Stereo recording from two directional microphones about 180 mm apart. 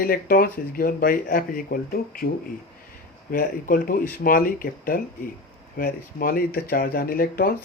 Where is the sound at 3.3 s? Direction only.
50° left (ahead or behind).